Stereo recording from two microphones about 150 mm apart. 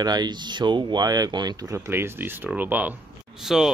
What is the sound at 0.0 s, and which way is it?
Speech, 25° right (ahead or behind).